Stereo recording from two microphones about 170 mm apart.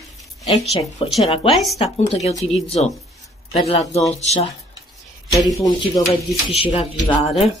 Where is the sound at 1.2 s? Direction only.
35° left (ahead or behind).